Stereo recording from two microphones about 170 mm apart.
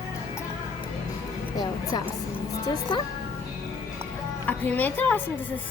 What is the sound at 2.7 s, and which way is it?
Speech, 25° left (ahead or behind).